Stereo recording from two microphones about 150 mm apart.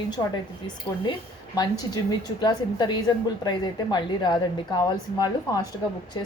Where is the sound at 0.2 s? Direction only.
30° left (ahead or behind).